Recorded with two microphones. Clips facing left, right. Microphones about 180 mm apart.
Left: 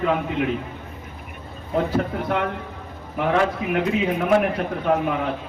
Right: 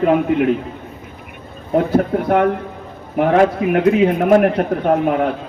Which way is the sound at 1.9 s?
50° right (ahead or behind).